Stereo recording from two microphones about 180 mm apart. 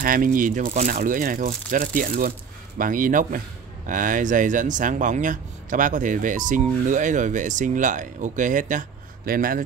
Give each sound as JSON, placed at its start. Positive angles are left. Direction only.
{"t": 0.0, "sound": "a man's voice", "side_deg": -50}